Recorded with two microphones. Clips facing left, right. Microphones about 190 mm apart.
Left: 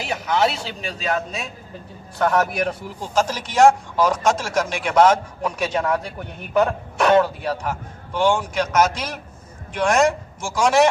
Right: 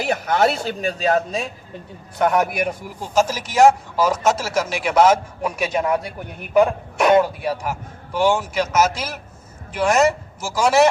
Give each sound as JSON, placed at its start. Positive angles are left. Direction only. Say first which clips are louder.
{"t": 0.0, "sound": "a man's voice", "louder": "right 2 dB", "side_deg": -55}
{"t": 2.1, "sound": "a man's voice", "louder": "right 1 dB", "side_deg": -15}